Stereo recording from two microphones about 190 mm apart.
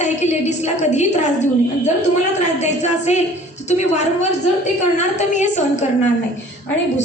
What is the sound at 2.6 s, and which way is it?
A woman's voice, 35° left (ahead or behind).